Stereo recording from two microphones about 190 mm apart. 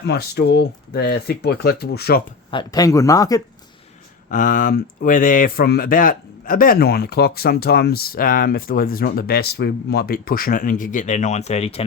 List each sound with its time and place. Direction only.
0.0 s speech: 60° left (ahead or behind)
2.5 s speech: 20° left (ahead or behind)
4.3 s speech: 45° left (ahead or behind)